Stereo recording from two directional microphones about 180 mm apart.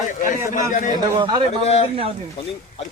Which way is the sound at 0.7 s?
45° left (ahead or behind).